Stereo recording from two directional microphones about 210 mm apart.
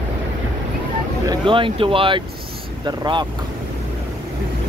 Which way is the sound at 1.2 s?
25° right (ahead or behind).